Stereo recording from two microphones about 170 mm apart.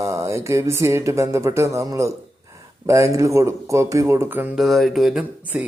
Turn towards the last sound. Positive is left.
turn(degrees=-10)  # may be behind; listen again after turning